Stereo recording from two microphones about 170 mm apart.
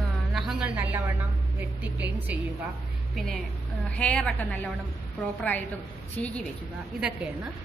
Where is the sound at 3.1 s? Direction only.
Centre (ahead or behind).